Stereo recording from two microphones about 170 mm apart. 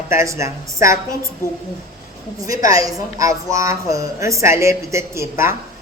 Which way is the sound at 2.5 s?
20° right (ahead or behind).